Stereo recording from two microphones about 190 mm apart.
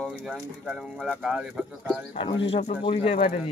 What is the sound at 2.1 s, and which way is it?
Speech, 30° left (ahead or behind).